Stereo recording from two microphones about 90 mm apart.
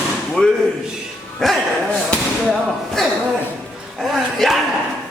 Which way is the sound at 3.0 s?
5° left (ahead or behind).